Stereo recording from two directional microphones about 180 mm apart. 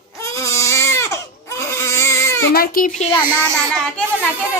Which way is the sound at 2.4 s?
55° left (ahead or behind).